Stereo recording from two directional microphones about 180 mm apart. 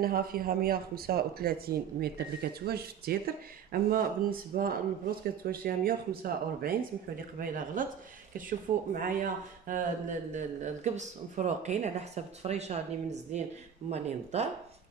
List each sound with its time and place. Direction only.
0.0 s a man's voice: 55° right (ahead or behind); by 14.5 s 35° right (ahead or behind)